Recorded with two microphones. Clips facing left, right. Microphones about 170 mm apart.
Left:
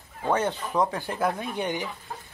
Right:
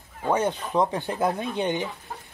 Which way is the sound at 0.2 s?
15° right (ahead or behind).